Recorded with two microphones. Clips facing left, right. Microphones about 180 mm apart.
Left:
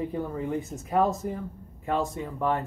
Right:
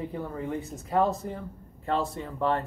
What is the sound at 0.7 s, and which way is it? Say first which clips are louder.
Speech: even; 5° left (ahead or behind).